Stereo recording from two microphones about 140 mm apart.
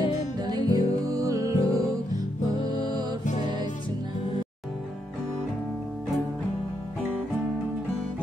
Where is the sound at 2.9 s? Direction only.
30° right (ahead or behind).